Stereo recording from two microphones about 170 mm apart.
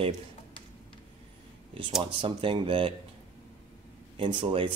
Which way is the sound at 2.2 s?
30° right (ahead or behind).